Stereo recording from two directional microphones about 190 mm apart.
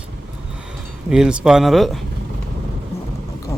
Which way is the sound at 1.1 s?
5° right (ahead or behind).